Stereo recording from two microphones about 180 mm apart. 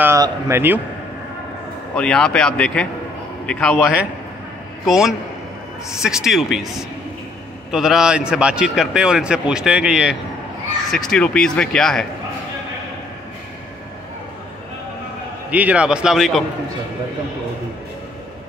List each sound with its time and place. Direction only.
0.0 s speech: 15° right (ahead or behind)
2.0 s a man's voice: 5° left (ahead or behind)
15.5 s a man's voice: 5° right (ahead or behind)